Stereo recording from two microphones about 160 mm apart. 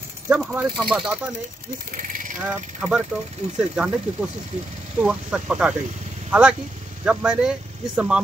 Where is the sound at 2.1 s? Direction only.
55° right (ahead or behind).